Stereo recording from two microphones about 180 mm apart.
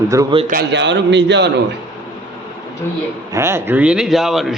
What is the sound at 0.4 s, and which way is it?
A man's voice, 60° right (ahead or behind).